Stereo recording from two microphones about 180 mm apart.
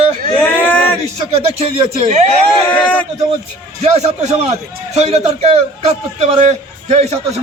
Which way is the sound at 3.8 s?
35° right (ahead or behind).